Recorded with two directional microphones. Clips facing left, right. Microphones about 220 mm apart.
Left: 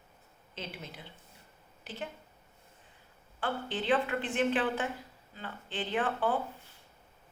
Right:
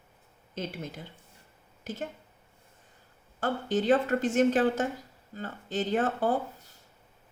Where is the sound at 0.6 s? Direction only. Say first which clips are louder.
Right 7 dB; 45° right (ahead or behind).